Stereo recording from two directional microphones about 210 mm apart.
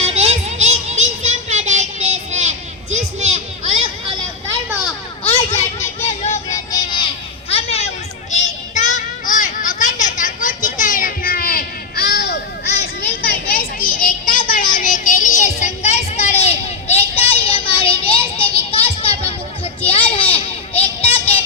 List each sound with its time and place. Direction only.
0.0 s music: 30° right (ahead or behind)
5.3 s children playing: 30° left (ahead or behind)
6.7 s a sound: 20° left (ahead or behind)
8.3 s children playing: 35° left (ahead or behind)
12.8 s a sound: 50° left (ahead or behind); by 16.6 s 30° left (ahead or behind)
17.4 s music: 25° left (ahead or behind)